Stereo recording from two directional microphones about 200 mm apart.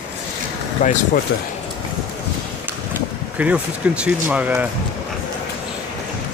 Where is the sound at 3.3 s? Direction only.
5° right (ahead or behind).